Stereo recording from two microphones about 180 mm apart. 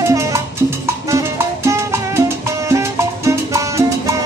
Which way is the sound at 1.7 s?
15° right (ahead or behind).